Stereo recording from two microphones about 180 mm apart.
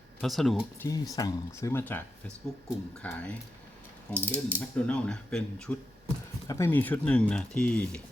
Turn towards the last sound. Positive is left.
turn(degrees=5)  # may be behind; listen again after turning